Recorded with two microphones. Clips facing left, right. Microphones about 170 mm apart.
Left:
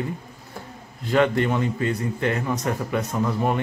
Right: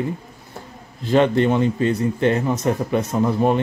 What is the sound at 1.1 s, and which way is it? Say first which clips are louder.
A man's voice: right 4 dB; 25° right (ahead or behind).